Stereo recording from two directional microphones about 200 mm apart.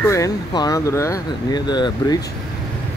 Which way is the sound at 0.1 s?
15° left (ahead or behind).